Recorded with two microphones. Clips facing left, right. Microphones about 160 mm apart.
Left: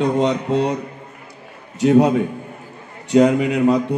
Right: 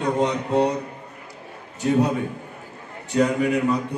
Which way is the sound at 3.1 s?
85° left.